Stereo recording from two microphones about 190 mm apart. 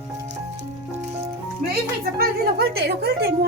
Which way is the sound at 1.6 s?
40° right (ahead or behind).